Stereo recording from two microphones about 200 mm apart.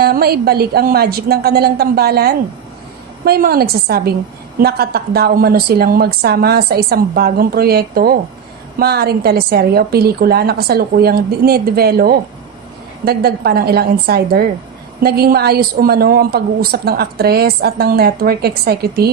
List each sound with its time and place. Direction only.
0.0 s a woman's voice: 50° right (ahead or behind)